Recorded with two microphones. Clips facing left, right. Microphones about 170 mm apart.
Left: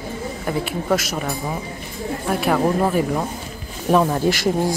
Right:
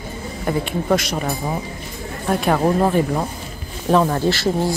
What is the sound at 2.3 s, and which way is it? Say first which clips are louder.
Speech: right 2 dB; 5° left (ahead or behind).